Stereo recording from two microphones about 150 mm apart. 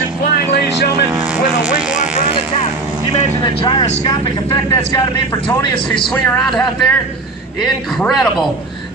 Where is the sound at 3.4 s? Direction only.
30° left (ahead or behind).